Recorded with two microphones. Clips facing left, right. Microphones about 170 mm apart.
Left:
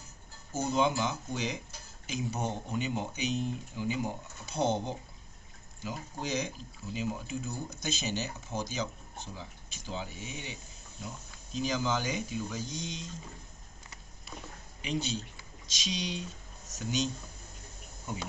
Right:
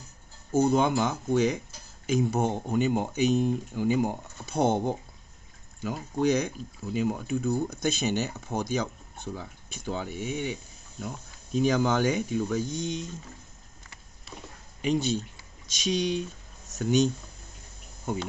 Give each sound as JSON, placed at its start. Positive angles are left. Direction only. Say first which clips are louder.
{"t": 0.5, "sound": "speech", "louder": "right 6 dB", "side_deg": -55}
{"t": 14.8, "sound": "speech", "louder": "right 8 dB", "side_deg": -50}